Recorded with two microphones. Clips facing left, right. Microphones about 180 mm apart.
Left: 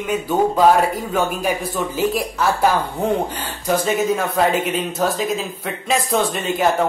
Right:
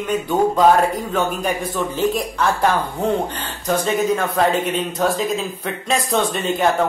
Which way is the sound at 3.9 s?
5° left (ahead or behind).